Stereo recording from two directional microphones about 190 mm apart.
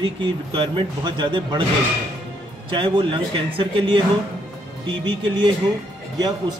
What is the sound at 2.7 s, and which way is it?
Speech, 25° right (ahead or behind).